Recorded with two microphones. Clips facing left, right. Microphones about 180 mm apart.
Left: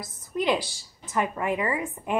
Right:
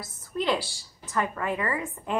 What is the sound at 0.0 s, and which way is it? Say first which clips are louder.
A woman's voice: left 2 dB; 15° left (ahead or behind).